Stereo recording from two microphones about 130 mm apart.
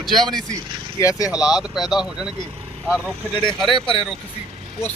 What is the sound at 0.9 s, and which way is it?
Speech, 25° left (ahead or behind).